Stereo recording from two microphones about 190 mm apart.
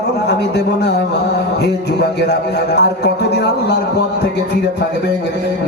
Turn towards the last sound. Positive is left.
turn(degrees=60)  # may be behind; listen again after turning